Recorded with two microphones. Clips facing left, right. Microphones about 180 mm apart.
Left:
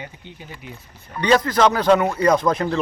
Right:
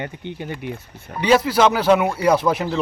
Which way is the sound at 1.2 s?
10° right (ahead or behind).